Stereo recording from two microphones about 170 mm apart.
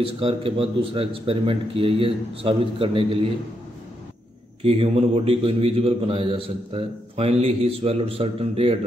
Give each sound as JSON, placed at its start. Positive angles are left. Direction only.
{"t": 0.0, "sound": "a man's voice", "side_deg": -30}
{"t": 4.6, "sound": "a man's voice", "side_deg": -35}